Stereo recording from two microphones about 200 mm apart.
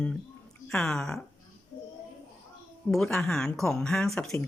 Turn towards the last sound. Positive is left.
turn(degrees=5)  # may be behind; listen again after turning